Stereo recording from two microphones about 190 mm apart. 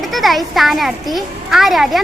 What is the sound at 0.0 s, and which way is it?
A child's voice, centre (ahead or behind).